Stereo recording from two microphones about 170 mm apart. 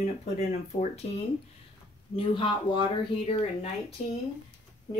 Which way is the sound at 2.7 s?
30° left (ahead or behind).